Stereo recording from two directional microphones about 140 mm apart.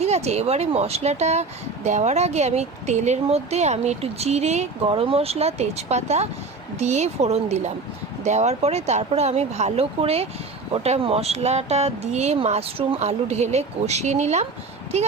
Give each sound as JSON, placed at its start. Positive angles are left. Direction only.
{"t": 0.0, "sound": "speech", "side_deg": -50}